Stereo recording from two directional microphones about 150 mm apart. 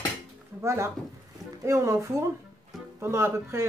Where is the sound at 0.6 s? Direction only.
20° right (ahead or behind).